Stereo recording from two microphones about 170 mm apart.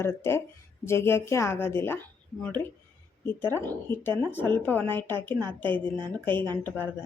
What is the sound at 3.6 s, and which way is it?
Speech, 10° left (ahead or behind).